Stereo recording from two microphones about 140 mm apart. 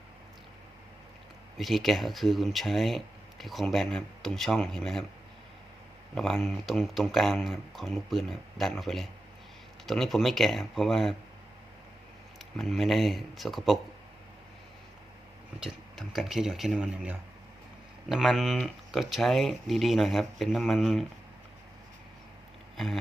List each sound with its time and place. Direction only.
1.5 s speech: centre (ahead or behind)
6.1 s speech: centre (ahead or behind)
12.5 s speech: centre (ahead or behind)
15.6 s speech: centre (ahead or behind)